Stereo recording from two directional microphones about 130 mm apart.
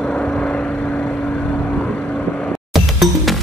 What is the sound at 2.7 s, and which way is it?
Music, centre (ahead or behind).